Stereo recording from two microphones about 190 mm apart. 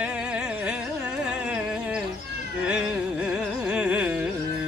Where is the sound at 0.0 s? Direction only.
5° right (ahead or behind).